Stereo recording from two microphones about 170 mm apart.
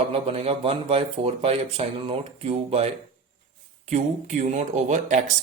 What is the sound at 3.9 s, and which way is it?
Speech, 40° right (ahead or behind).